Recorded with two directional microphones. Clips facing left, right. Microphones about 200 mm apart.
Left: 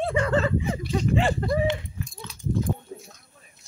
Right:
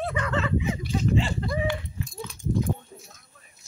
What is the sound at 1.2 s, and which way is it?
Speech, 55° left (ahead or behind).